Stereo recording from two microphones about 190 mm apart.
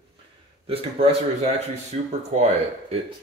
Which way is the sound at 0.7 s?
30° right (ahead or behind).